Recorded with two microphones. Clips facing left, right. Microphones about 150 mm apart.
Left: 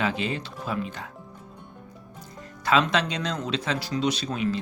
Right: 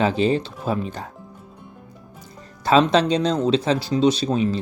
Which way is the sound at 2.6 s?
30° right (ahead or behind).